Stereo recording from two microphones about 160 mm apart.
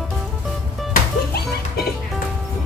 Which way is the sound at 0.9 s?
75° left (ahead or behind).